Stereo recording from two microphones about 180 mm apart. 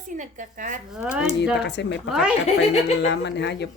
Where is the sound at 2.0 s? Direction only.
Centre (ahead or behind).